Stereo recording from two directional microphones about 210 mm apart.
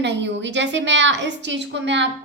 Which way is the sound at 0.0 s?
55° right (ahead or behind).